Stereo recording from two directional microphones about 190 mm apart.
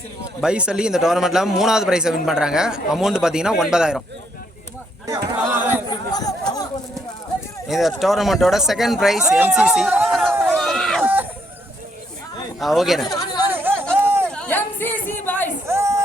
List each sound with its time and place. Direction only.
0.4 s a man's voice: 5° right (ahead or behind)
5.5 s speech: 10° right (ahead or behind)
5.9 s speech: 20° left (ahead or behind)
7.7 s a man's voice: centre (ahead or behind)
10.4 s run: centre (ahead or behind)
11.0 s chicken: 10° right (ahead or behind)
12.5 s a man's voice: centre (ahead or behind)
13.1 s chatter: 20° left (ahead or behind)
13.5 s chatter: 10° right (ahead or behind)
14.3 s chatter: 5° left (ahead or behind)
15.6 s a sound: 15° right (ahead or behind)